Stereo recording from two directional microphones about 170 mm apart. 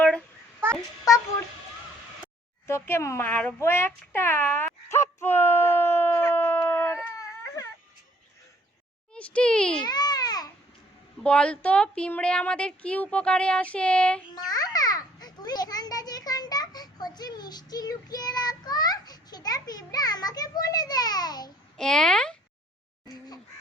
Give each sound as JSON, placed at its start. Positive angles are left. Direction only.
{"t": 2.6, "sound": "a sound", "side_deg": 15}
{"t": 7.2, "sound": "baby cry", "side_deg": 20}
{"t": 9.1, "sound": "a child's voice", "side_deg": 5}
{"t": 9.8, "sound": "babbling", "side_deg": 25}
{"t": 11.2, "sound": "a woman's voice", "side_deg": 5}
{"t": 14.3, "sound": "a child's voice", "side_deg": 25}
{"t": 21.8, "sound": "a child's voice", "side_deg": 5}